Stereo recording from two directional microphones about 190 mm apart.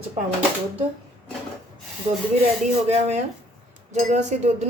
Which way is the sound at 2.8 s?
35° right (ahead or behind).